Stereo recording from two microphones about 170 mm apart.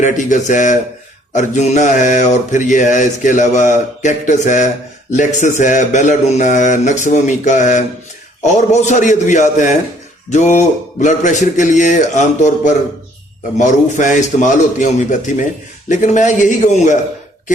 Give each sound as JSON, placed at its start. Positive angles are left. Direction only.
{"t": 0.0, "sound": "mantra", "side_deg": 45}